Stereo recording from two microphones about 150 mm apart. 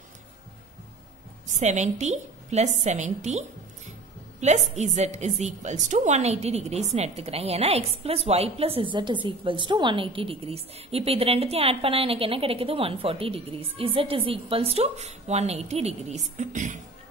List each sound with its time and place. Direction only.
1.5 s a woman's voice: 50° right (ahead or behind)